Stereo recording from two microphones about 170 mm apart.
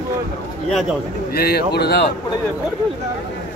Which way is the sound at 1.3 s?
70° left (ahead or behind).